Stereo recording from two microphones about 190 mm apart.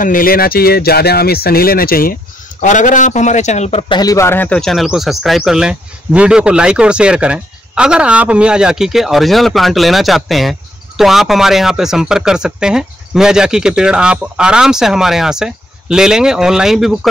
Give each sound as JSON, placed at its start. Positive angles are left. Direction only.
{"t": 0.0, "sound": "a man's voice", "side_deg": 45}
{"t": 3.9, "sound": "speech", "side_deg": 20}